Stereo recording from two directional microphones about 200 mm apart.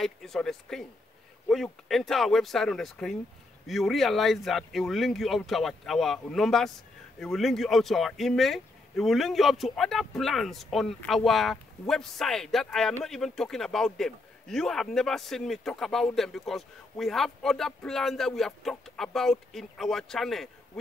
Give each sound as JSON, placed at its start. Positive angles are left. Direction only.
{"t": 0.0, "sound": "speech", "side_deg": 0}